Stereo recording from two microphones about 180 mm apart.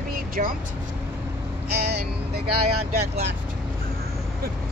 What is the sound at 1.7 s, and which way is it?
Speech, 65° right (ahead or behind).